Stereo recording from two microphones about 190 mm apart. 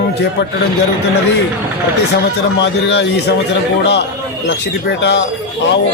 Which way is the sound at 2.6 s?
70° left (ahead or behind).